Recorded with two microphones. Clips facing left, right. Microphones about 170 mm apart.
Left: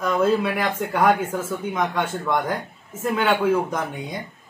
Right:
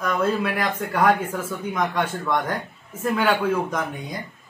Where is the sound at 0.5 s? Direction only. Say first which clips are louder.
Left 1 dB; centre (ahead or behind).